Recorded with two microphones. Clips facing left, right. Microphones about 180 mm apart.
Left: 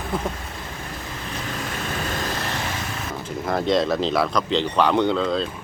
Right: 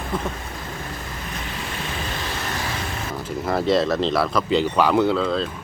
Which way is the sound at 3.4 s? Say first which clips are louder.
Right 1 dB; 5° right (ahead or behind).